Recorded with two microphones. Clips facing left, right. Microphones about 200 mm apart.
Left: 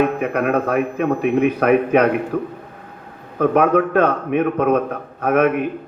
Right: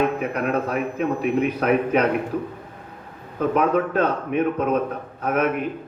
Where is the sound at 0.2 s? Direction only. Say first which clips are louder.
Left 4 dB; 60° left (ahead or behind).